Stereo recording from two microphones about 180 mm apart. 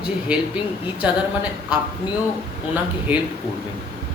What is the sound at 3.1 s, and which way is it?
Speech, 10° right (ahead or behind).